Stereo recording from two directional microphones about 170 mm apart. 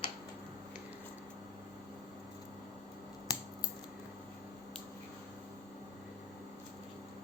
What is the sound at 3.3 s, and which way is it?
Scissors, 20° left (ahead or behind).